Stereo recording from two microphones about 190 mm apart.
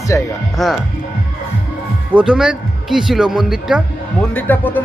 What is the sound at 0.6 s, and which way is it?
Speech, centre (ahead or behind).